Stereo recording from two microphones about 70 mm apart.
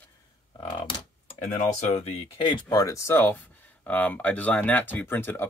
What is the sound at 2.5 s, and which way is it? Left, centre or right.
Speech, left.